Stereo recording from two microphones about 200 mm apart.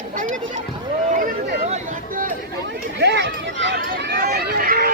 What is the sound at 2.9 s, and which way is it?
Speech, 60° right (ahead or behind).